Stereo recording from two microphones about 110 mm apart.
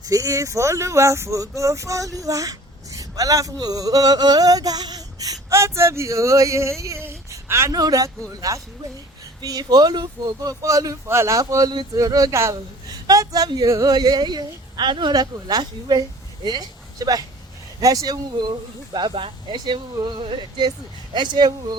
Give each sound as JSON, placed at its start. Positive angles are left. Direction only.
{"t": 0.0, "sound": "speech", "side_deg": -30}
{"t": 10.5, "sound": "speech", "side_deg": -30}
{"t": 18.9, "sound": "speech", "side_deg": -50}